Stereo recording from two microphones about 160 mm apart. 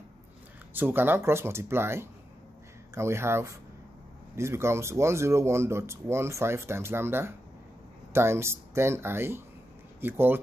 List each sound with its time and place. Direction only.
0.7 s speech: 15° right (ahead or behind)